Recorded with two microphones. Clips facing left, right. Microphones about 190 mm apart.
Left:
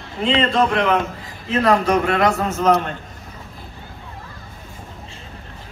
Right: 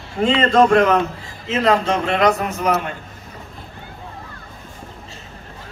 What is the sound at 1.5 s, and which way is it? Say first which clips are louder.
A man's voice: left 1 dB; 20° right (ahead or behind).